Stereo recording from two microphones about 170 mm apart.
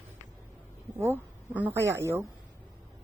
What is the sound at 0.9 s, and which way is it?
Speech, 10° right (ahead or behind).